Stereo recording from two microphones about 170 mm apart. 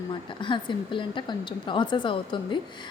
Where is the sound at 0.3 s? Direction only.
30° left (ahead or behind).